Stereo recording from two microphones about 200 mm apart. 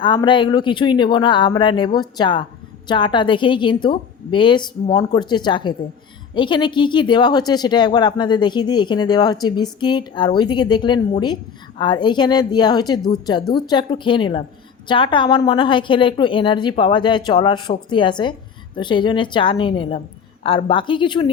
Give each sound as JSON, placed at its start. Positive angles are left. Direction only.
{"t": 0.0, "sound": "speech", "side_deg": 25}